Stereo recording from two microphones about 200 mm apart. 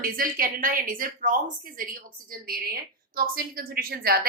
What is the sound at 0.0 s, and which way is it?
A woman's voice, 45° right (ahead or behind).